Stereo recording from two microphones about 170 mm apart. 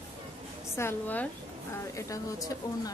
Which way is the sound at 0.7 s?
10° left (ahead or behind).